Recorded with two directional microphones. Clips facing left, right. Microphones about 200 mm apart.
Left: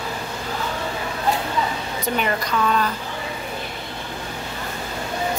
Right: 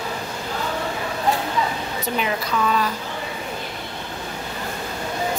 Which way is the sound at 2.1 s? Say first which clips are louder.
Left 1 dB; centre (ahead or behind).